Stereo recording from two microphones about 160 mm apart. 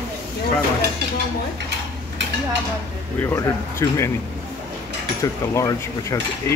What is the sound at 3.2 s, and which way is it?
Cutlery, 15° left (ahead or behind).